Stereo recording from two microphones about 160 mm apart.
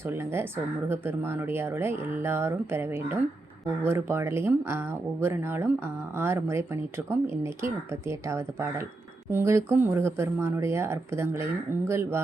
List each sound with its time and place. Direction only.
0.1 s speech: 15° right (ahead or behind)